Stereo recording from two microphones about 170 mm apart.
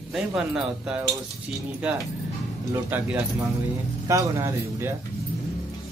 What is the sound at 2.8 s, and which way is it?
Speech, 10° right (ahead or behind).